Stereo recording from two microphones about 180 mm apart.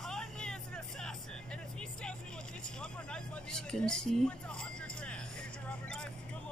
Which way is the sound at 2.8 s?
5° left (ahead or behind).